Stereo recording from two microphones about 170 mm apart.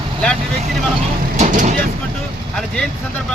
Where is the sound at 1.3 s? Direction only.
45° right (ahead or behind).